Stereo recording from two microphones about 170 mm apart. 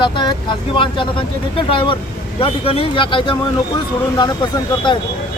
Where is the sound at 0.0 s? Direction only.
25° left (ahead or behind).